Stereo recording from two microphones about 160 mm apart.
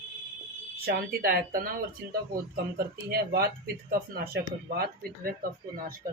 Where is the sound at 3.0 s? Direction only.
75° right (ahead or behind).